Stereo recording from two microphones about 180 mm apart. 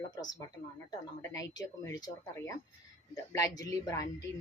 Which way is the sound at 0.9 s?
20° left (ahead or behind).